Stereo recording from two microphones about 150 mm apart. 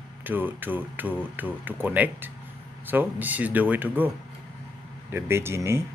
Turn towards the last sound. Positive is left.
turn(degrees=-20)  # may be behind; listen again after turning